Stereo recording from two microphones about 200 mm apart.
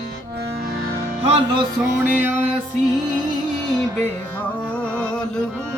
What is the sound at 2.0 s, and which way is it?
Music, 10° right (ahead or behind).